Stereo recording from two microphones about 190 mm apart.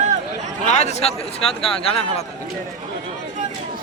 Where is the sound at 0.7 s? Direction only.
35° left (ahead or behind).